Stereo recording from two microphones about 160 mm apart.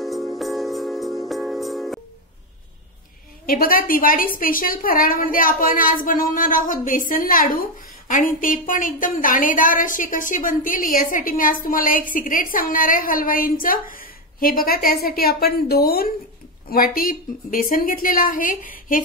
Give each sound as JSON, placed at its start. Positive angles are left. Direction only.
{"t": 0.0, "sound": "music", "side_deg": 0}
{"t": 3.4, "sound": "a woman's voice", "side_deg": 65}